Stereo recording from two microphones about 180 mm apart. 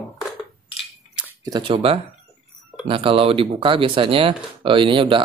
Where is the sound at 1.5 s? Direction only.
30° right (ahead or behind).